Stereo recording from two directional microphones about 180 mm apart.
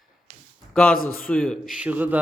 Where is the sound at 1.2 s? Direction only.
5° left (ahead or behind).